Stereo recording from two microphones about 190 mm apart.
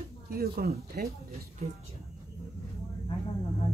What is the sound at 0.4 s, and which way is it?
Speech, 55° right (ahead or behind).